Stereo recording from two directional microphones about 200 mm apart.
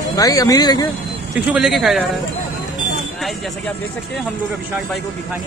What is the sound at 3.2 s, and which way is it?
Speech, centre (ahead or behind).